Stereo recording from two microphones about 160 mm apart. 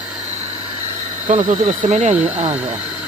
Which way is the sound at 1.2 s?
50° right (ahead or behind).